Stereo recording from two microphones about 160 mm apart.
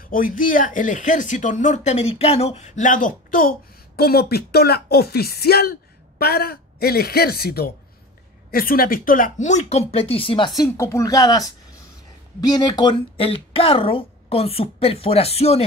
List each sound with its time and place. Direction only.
0.1 s speech: 60° left (ahead or behind); by 7.7 s 75° left (ahead or behind)
8.5 s speech: 65° left (ahead or behind); by 15.6 s 40° left (ahead or behind)